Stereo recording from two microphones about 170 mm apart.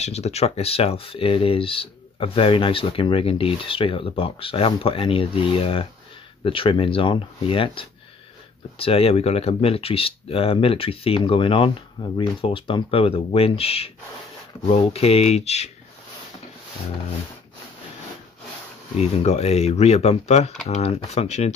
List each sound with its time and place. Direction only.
0.0 s speech: 40° left (ahead or behind)
18.9 s speech: 40° left (ahead or behind)